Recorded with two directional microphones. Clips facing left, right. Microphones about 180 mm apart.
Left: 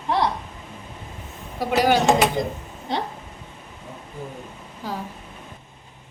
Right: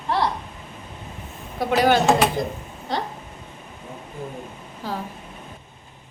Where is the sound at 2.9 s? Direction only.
20° left (ahead or behind).